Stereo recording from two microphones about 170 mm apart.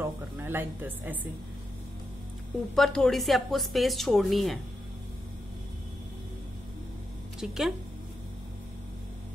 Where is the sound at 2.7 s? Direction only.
5° left (ahead or behind).